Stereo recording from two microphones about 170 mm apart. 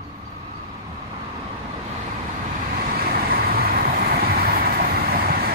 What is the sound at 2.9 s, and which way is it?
Vehicle, 60° right (ahead or behind).